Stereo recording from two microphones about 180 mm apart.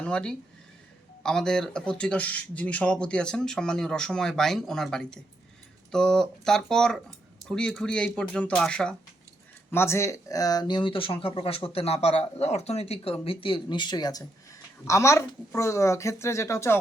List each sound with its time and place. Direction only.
0.0 s speech: 5° left (ahead or behind)